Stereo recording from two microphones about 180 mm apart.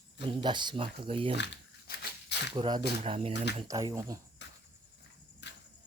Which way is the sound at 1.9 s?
55° left (ahead or behind).